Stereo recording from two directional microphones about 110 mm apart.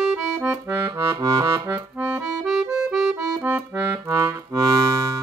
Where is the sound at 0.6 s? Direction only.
30° right (ahead or behind).